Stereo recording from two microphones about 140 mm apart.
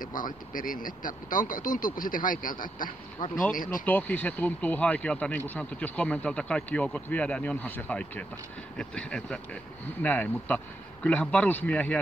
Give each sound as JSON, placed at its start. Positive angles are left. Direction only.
{"t": 0.0, "sound": "speech", "side_deg": 75}
{"t": 3.8, "sound": "speech", "side_deg": 10}